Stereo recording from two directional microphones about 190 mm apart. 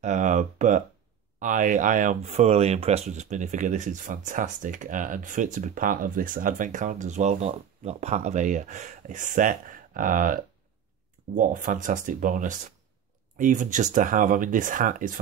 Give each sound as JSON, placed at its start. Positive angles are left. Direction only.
{"t": 0.0, "sound": "speech", "side_deg": -40}